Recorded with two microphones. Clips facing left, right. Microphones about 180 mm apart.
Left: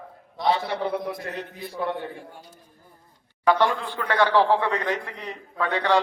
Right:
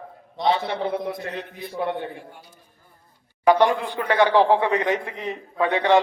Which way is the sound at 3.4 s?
15° right (ahead or behind).